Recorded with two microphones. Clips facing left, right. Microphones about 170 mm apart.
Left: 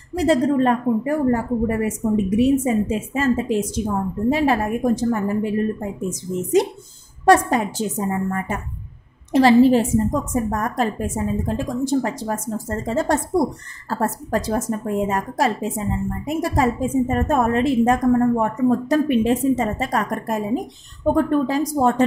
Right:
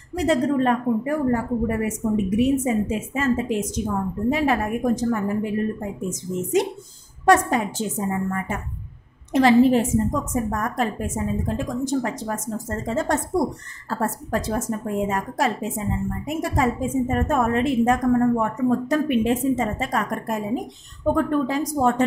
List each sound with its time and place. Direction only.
0.1 s a woman's voice: 35° left (ahead or behind)